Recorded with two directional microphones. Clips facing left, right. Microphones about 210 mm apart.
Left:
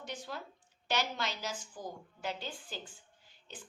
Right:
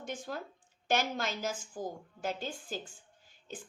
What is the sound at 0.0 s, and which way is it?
A woman's voice, 50° right (ahead or behind).